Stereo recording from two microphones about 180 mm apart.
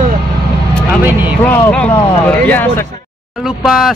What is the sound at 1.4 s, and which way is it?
Speech, 10° left (ahead or behind).